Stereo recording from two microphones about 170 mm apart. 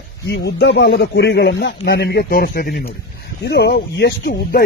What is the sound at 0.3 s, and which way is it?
Speech, 80° left.